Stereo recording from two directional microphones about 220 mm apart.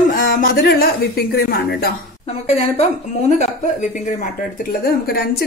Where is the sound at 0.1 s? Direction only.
35° left (ahead or behind).